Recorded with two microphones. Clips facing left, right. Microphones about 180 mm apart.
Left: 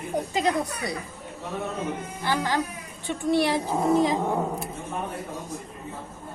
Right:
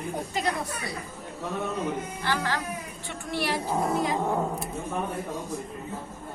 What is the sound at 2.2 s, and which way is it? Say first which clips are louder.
A woman's voice: left 4 dB; 15° left (ahead or behind).